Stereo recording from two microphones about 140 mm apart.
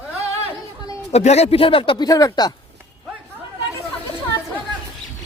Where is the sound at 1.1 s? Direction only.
50° left (ahead or behind).